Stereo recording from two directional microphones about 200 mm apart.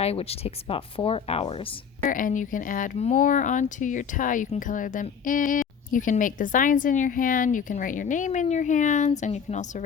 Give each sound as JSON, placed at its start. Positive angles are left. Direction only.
{"t": 0.0, "sound": "speech", "side_deg": 30}
{"t": 2.1, "sound": "speech", "side_deg": 40}